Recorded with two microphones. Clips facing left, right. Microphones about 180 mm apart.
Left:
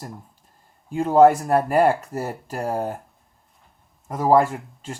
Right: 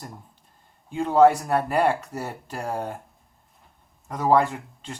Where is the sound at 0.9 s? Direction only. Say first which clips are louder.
Left 3 dB; 5° left (ahead or behind).